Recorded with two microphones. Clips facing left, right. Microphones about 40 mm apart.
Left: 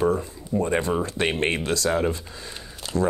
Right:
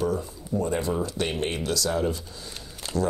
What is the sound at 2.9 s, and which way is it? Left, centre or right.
Speech, centre.